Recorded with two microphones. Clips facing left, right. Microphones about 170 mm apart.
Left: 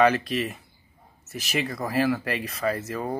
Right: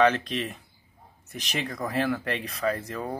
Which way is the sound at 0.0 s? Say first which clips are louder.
Left 2 dB; 5° left (ahead or behind).